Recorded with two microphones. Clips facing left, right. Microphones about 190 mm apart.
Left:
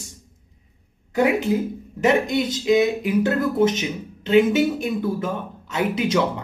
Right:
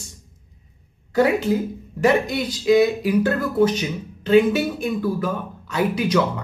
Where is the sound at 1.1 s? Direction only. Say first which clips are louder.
Right 1 dB; 15° left (ahead or behind).